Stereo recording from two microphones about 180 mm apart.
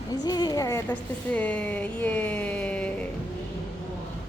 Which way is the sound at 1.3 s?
5° left (ahead or behind).